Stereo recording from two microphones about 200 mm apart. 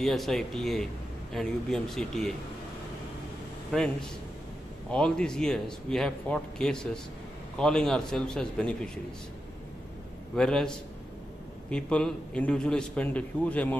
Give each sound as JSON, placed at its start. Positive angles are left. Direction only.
{"t": 0.0, "sound": "a man's voice", "side_deg": 0}
{"t": 3.7, "sound": "a man's voice", "side_deg": 5}
{"t": 10.3, "sound": "a man's voice", "side_deg": 5}